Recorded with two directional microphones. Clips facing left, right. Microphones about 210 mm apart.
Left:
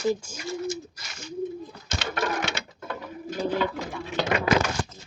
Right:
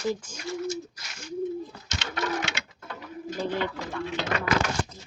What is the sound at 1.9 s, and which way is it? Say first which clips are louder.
Bird: left 3 dB; 55° left (ahead or behind).